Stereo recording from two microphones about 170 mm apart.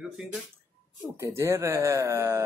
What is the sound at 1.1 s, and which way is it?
Speech, 15° right (ahead or behind).